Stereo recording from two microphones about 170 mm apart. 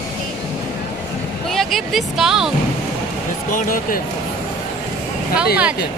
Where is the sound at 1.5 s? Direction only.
Centre (ahead or behind).